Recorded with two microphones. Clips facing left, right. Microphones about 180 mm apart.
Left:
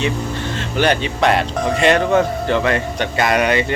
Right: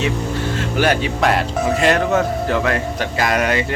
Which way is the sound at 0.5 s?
5° right (ahead or behind).